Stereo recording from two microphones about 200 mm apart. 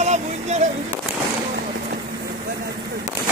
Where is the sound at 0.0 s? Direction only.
35° right (ahead or behind).